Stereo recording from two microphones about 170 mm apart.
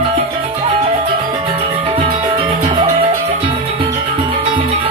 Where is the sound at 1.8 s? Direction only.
35° right (ahead or behind).